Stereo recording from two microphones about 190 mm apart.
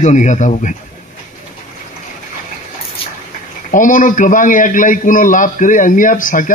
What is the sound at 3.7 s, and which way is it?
A man's voice, 45° left (ahead or behind).